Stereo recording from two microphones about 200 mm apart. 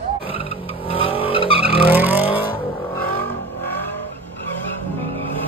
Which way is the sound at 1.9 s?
10° right (ahead or behind).